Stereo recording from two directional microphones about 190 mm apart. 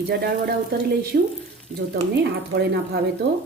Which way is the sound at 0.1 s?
55° right (ahead or behind).